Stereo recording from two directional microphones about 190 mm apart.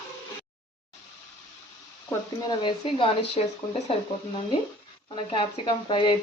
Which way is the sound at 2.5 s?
25° left (ahead or behind).